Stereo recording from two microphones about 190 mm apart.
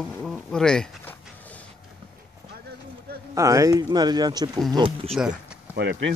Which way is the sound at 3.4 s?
15° right (ahead or behind).